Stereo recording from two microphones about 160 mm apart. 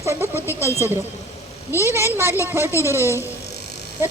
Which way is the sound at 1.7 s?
15° right (ahead or behind).